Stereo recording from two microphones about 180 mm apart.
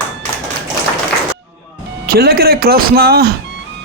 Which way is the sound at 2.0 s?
55° right (ahead or behind).